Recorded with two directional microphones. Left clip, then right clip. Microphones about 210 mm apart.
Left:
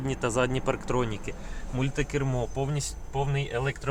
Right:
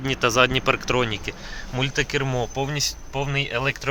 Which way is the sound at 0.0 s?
15° right (ahead or behind).